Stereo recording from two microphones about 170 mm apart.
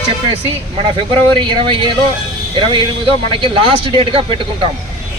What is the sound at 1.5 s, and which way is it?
Speech, 30° right (ahead or behind).